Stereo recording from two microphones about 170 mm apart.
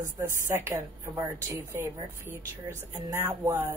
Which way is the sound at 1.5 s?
15° right (ahead or behind).